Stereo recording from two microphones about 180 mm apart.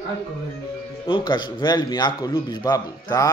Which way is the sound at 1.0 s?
25° left (ahead or behind).